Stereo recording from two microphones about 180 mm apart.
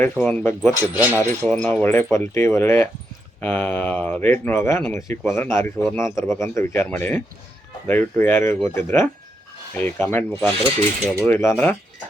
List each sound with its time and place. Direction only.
0.0 s speech: 10° left (ahead or behind)
0.8 s speech: 10° right (ahead or behind)
1.5 s speech: 5° left (ahead or behind)
11.0 s speech: 20° right (ahead or behind)
11.3 s speech: 15° left (ahead or behind)